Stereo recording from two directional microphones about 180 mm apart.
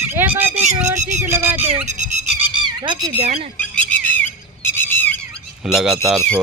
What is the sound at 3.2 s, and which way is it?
Speech, 35° right (ahead or behind).